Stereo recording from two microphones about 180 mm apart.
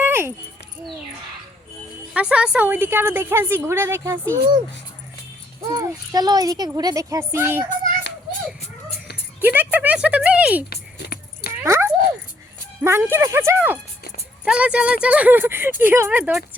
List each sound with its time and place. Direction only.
0.0 s a sound: 10° right (ahead or behind)
2.1 s a woman's voice: 5° right (ahead or behind)
5.6 s speech: 15° right (ahead or behind)
9.4 s a woman's voice: 10° right (ahead or behind)
10.7 s keys jangling: 60° left (ahead or behind)
11.6 s dog: 15° right (ahead or behind)
12.8 s a woman's voice: 15° right (ahead or behind)